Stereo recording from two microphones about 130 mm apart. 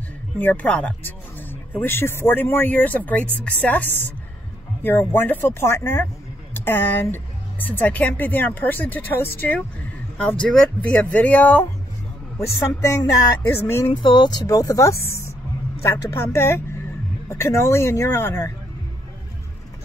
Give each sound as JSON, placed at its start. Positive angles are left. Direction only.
{"t": 0.4, "sound": "a woman's voice", "side_deg": 15}
{"t": 12.5, "sound": "speech", "side_deg": 25}
{"t": 14.0, "sound": "speech", "side_deg": 35}